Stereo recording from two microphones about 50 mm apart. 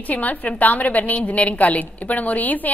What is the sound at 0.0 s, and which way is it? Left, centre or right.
A woman's voice, left.